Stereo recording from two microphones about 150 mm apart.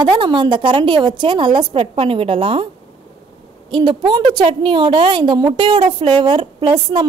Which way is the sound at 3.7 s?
30° right (ahead or behind).